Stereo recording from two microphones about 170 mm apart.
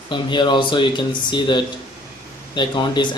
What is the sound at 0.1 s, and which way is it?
A man's voice, 25° left (ahead or behind).